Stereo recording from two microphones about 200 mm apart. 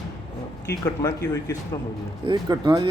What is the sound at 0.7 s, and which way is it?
Speech, 15° left (ahead or behind).